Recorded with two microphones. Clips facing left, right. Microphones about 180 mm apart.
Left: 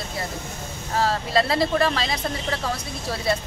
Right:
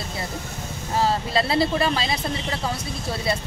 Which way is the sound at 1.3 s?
5° right (ahead or behind).